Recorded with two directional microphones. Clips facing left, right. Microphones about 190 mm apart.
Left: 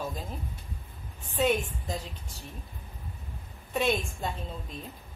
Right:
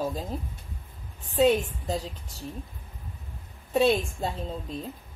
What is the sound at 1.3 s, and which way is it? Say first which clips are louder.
Speech: right 5 dB; 35° right (ahead or behind).